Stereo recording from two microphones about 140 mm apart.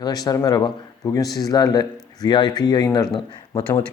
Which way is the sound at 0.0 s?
30° left (ahead or behind).